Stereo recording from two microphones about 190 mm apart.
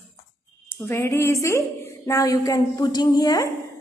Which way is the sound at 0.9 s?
15° left (ahead or behind).